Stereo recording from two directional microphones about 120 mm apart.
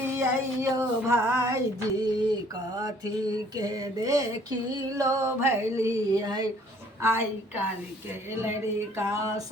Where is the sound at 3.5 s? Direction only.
30° right (ahead or behind).